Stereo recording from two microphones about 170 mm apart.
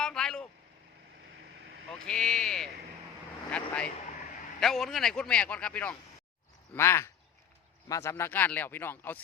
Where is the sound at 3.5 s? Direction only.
5° left (ahead or behind).